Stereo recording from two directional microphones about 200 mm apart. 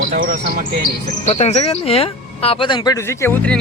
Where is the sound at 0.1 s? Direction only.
45° right (ahead or behind).